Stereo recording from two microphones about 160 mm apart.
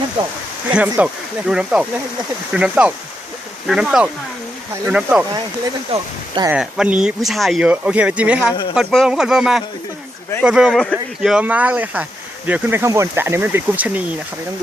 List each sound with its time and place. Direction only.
0.2 s speech: 35° right (ahead or behind)
0.8 s speech: 5° right (ahead or behind)
5.9 s speech: 30° right (ahead or behind)
6.5 s speech: 5° right (ahead or behind)